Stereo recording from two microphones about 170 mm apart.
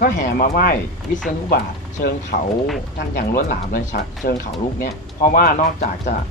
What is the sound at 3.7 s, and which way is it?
Speech, 55° left (ahead or behind).